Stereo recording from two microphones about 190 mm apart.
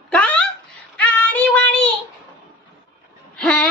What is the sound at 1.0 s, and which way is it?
Child singing, 5° left (ahead or behind).